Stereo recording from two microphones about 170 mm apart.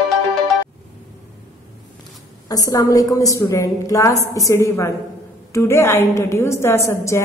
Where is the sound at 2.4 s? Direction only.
20° left (ahead or behind).